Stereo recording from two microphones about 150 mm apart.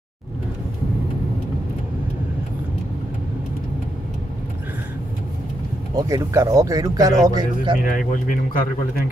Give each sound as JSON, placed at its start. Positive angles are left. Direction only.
{"t": 5.9, "sound": "speech", "side_deg": -25}
{"t": 8.1, "sound": "speech", "side_deg": 65}